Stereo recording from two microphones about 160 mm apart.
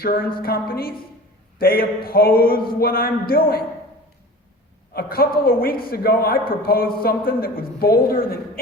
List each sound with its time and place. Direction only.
0.0 s speech: 70° left (ahead or behind)
4.9 s speech: 70° left (ahead or behind)